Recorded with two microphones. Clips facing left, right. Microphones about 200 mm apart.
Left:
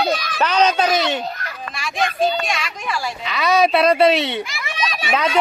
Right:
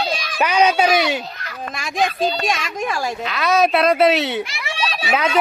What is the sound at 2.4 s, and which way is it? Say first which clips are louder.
Speech: right 3 dB; 45° right (ahead or behind).